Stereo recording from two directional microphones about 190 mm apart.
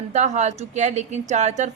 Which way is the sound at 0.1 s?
40° right (ahead or behind).